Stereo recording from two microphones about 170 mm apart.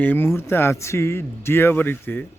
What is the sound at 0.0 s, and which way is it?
A man's voice, 10° left (ahead or behind).